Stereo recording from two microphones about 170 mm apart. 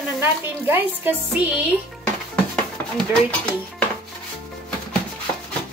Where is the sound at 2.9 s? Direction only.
5° left (ahead or behind).